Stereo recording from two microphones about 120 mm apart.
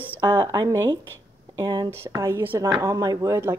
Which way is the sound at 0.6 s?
35° right (ahead or behind).